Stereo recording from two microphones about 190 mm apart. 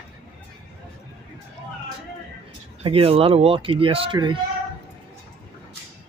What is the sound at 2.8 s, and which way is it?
Speech, 30° right (ahead or behind).